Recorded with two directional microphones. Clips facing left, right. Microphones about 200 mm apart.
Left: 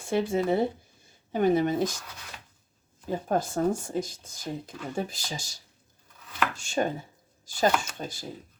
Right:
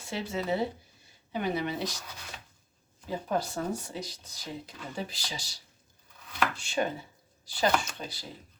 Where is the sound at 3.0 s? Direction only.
45° left (ahead or behind).